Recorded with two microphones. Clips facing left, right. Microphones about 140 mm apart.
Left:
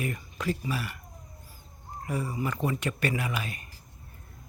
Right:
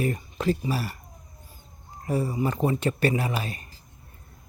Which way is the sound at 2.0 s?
30° right (ahead or behind).